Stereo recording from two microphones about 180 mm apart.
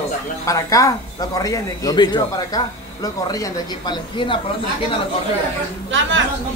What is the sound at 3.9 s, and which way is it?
Speech, 25° left (ahead or behind).